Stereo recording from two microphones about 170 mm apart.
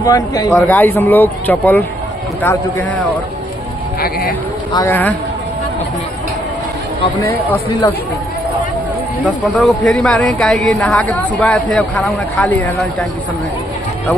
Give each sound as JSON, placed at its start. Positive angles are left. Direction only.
{"t": 0.0, "sound": "speech", "side_deg": 20}
{"t": 0.5, "sound": "a man's voice", "side_deg": 10}
{"t": 4.7, "sound": "a man's voice", "side_deg": 15}
{"t": 9.2, "sound": "a man's voice", "side_deg": 5}